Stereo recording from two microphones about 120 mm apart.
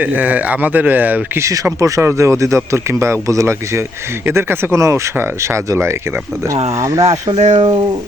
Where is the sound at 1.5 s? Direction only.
25° right (ahead or behind).